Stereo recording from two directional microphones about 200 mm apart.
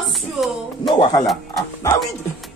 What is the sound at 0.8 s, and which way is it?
Speech, 20° left (ahead or behind).